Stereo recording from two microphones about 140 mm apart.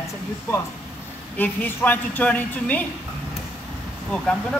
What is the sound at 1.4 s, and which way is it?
A woman's voice, 10° left (ahead or behind).